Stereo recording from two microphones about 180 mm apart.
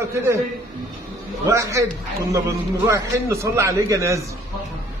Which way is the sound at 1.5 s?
15° right (ahead or behind).